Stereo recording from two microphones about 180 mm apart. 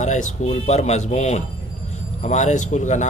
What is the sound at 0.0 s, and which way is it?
Speech, 40° left (ahead or behind).